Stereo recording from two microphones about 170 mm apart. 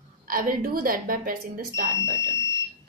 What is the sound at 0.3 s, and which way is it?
Speech, 55° right (ahead or behind).